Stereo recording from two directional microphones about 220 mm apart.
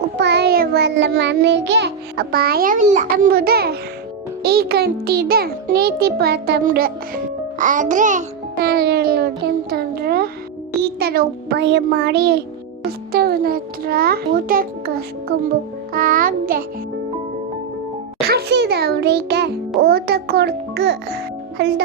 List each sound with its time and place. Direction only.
0.2 s child singing: 50° right (ahead or behind)
4.4 s a child's voice: 45° right (ahead or behind)
7.6 s music: 35° right (ahead or behind)
8.6 s a child's voice: 45° right (ahead or behind)
15.9 s music: 40° right (ahead or behind)
18.3 s a child's voice: 50° right (ahead or behind)